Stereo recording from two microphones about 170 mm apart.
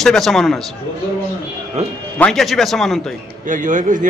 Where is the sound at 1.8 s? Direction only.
40° right (ahead or behind).